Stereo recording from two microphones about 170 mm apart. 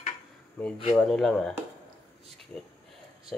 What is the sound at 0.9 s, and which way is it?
Speech, centre (ahead or behind).